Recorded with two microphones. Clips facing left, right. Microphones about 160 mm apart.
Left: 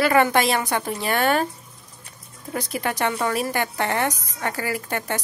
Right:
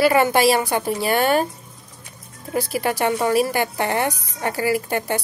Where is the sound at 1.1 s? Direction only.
30° right (ahead or behind).